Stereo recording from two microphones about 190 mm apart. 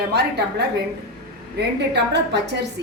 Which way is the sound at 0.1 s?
60° right (ahead or behind).